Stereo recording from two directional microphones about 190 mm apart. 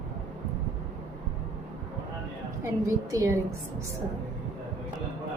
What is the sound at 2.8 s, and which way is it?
Speech, 15° right (ahead or behind).